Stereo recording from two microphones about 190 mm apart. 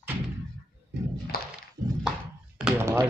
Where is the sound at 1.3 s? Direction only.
55° left (ahead or behind).